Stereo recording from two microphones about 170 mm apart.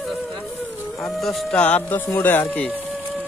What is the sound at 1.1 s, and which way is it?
Speech, centre (ahead or behind).